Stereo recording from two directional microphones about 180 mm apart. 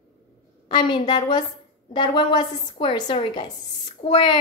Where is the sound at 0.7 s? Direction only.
25° left (ahead or behind).